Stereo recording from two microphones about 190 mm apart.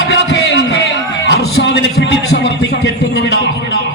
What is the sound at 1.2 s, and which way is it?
A man's voice, 65° left (ahead or behind).